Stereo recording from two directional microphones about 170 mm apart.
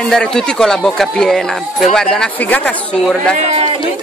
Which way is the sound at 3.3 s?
40° right (ahead or behind).